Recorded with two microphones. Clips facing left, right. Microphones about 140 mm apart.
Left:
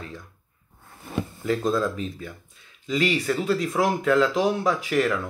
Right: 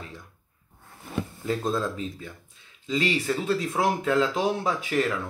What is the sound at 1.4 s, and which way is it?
Speech, 25° right (ahead or behind).